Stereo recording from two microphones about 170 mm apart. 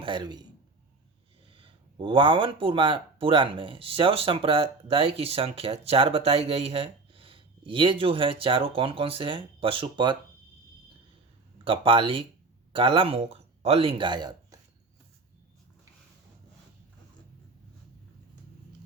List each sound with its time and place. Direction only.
0.0 s a man's voice: 25° right (ahead or behind)
1.5 s speech: 30° right (ahead or behind)
11.6 s speech: 30° right (ahead or behind)